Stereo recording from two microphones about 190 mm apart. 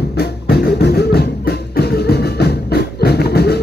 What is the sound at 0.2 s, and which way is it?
Music, 55° left (ahead or behind).